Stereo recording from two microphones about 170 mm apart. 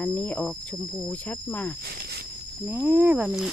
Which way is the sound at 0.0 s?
10° left (ahead or behind).